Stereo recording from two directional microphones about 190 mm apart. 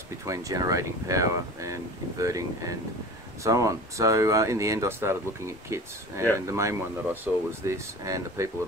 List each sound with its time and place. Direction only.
0.2 s speech: 15° right (ahead or behind)